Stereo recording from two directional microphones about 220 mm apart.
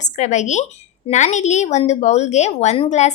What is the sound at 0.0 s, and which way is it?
A woman's voice, 30° left (ahead or behind).